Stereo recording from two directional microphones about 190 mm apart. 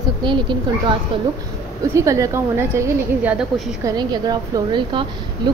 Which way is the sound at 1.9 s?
15° right (ahead or behind).